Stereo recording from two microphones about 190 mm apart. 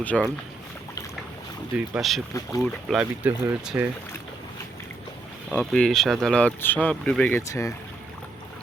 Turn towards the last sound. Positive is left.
turn(degrees=15)  # may be behind; listen again after turning